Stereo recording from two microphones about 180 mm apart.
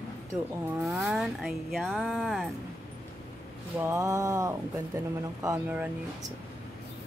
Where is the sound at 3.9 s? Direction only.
15° right (ahead or behind).